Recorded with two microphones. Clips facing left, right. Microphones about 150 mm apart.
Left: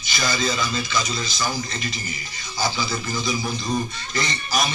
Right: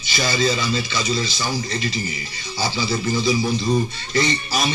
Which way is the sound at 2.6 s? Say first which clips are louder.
Right 2 dB; 30° right (ahead or behind).